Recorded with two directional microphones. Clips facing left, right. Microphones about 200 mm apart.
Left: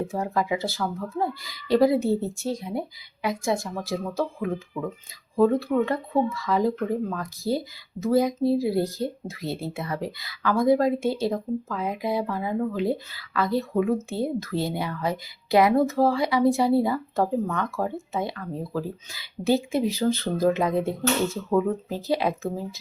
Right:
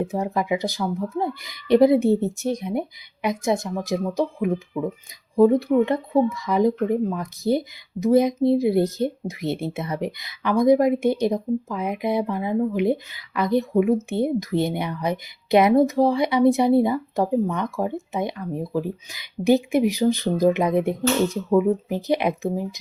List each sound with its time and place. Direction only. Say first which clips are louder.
0.1 s speech: right 2 dB; 20° right (ahead or behind)